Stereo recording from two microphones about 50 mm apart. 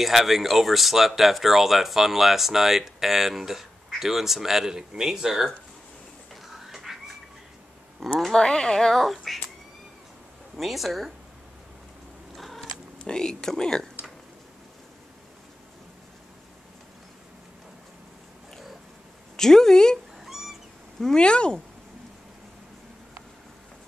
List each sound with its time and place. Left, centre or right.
0.0 s speech: centre
6.5 s a sound: centre
8.2 s speech: centre
10.5 s speech: centre
12.4 s a sound: centre
13.0 s speech: centre
18.5 s oink: centre
19.3 s speech: centre
20.2 s cat: centre
21.0 s speech: centre